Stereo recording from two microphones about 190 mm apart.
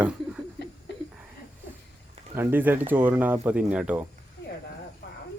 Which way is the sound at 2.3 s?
10° right (ahead or behind).